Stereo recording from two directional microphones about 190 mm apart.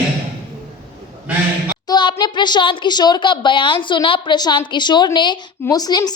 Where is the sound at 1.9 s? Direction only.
25° left (ahead or behind).